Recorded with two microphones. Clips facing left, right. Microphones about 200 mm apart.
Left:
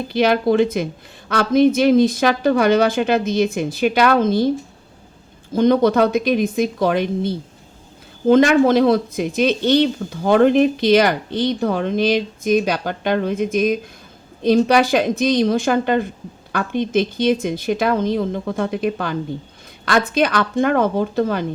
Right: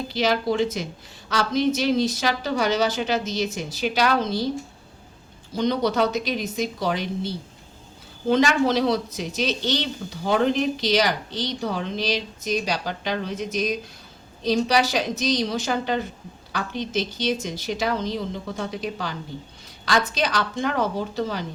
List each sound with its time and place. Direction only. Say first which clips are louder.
0.1 s a woman's voice: left 7 dB; 55° left (ahead or behind)
5.5 s a woman's voice: left 8 dB; 50° left (ahead or behind)